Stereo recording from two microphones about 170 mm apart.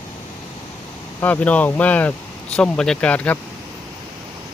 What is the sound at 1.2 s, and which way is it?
Speech, 10° left (ahead or behind).